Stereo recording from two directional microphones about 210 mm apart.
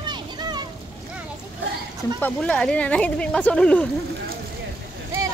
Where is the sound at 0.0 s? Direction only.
20° right (ahead or behind).